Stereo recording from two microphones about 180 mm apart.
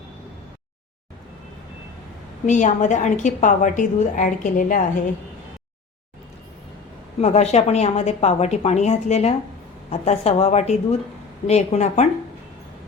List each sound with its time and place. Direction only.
2.5 s a woman's voice: 40° left (ahead or behind)
7.2 s a woman's voice: 35° left (ahead or behind)